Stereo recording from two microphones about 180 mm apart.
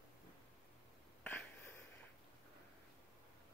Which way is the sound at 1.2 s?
5° left (ahead or behind).